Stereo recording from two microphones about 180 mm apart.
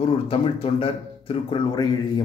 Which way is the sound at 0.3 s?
30° left (ahead or behind).